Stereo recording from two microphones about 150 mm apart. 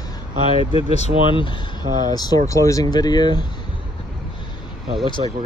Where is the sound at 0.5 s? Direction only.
40° left (ahead or behind).